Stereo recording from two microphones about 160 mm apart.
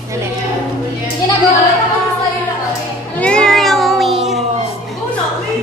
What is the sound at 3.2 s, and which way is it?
Cat, 5° left (ahead or behind).